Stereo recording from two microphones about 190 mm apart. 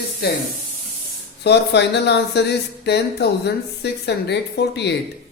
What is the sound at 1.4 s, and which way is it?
Speech, 60° left (ahead or behind).